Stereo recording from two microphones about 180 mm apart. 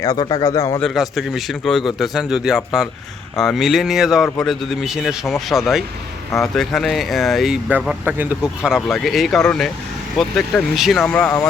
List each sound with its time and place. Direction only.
0.0 s speech: 20° left (ahead or behind)
0.8 s a man's voice: centre (ahead or behind)